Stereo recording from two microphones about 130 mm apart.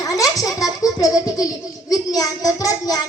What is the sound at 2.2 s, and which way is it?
Speech, 25° left (ahead or behind).